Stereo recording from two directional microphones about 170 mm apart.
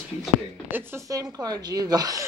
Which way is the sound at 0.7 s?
15° right (ahead or behind).